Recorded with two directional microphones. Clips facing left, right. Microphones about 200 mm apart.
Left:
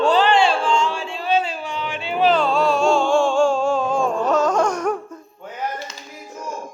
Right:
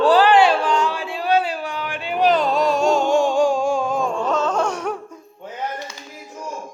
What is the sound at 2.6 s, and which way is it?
Music, 40° right (ahead or behind).